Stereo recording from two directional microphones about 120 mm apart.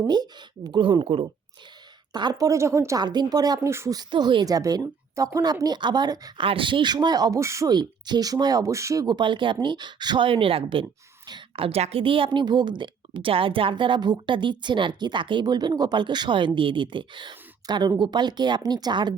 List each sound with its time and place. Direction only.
0.1 s a woman's voice: 35° right (ahead or behind)
2.1 s a woman's voice: 35° right (ahead or behind)
3.0 s a woman's voice: 35° right (ahead or behind)
3.9 s a woman's voice: 40° right (ahead or behind)
6.4 s a woman's voice: 45° right (ahead or behind); by 7.7 s 25° right (ahead or behind)
7.7 s a woman's voice: 35° right (ahead or behind)